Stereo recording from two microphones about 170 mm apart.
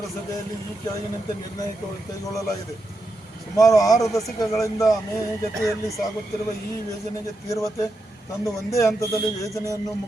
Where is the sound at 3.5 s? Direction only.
20° left (ahead or behind).